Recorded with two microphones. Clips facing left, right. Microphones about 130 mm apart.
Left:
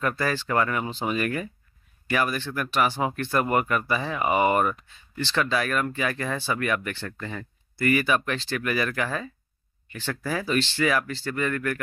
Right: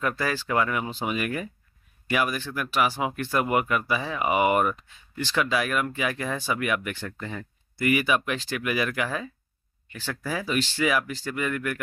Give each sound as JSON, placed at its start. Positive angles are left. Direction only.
{"t": 0.0, "sound": "speech", "side_deg": -5}